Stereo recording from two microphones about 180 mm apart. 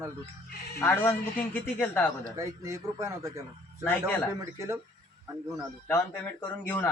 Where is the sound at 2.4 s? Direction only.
20° right (ahead or behind).